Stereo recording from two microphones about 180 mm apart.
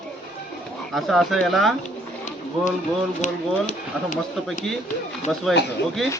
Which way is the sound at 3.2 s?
45° left (ahead or behind).